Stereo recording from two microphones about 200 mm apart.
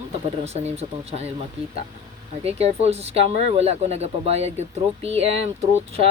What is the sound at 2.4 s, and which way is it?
Speech, 30° right (ahead or behind).